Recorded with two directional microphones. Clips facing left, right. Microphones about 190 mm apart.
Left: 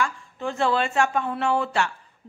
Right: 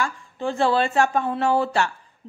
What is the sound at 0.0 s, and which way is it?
A woman's voice, 35° right (ahead or behind).